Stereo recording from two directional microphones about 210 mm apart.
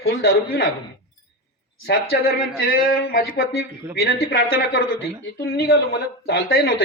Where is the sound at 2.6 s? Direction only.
45° left (ahead or behind).